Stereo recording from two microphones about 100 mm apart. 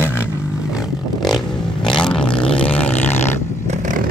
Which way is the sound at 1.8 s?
5° left (ahead or behind).